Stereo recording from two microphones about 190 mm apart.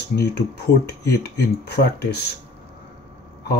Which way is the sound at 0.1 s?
55° left (ahead or behind).